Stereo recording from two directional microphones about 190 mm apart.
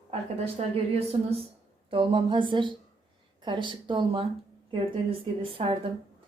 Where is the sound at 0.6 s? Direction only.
35° right (ahead or behind).